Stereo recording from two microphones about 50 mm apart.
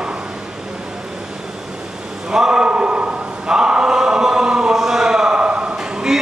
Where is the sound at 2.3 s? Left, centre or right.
Centre.